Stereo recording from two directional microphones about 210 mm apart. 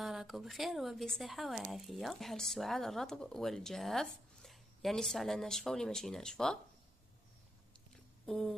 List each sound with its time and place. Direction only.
0.0 s speech: centre (ahead or behind)
8.3 s speech: centre (ahead or behind)